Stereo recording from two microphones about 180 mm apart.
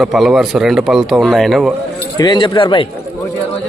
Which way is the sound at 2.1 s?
25° left (ahead or behind).